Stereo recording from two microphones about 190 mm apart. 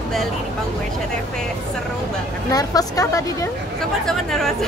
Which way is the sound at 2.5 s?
20° left (ahead or behind).